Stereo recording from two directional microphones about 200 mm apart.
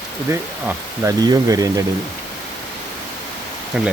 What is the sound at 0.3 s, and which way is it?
Speech, 15° right (ahead or behind).